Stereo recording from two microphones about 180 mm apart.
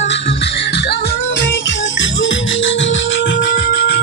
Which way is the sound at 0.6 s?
65° left (ahead or behind).